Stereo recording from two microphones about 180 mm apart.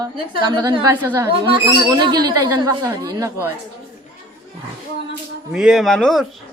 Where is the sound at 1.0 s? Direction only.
10° right (ahead or behind).